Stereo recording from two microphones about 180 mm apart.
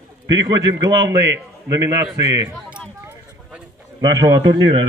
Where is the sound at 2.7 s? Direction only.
5° right (ahead or behind).